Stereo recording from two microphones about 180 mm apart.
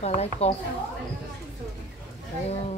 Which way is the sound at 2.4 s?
35° left (ahead or behind).